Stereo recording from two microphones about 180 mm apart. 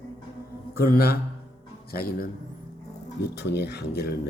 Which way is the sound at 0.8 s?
55° left (ahead or behind).